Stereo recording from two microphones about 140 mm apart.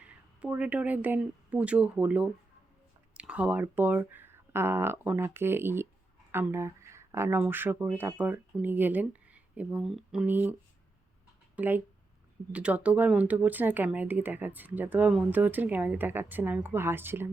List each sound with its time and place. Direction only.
0.0 s speech: 10° right (ahead or behind)
11.5 s speech: 15° right (ahead or behind)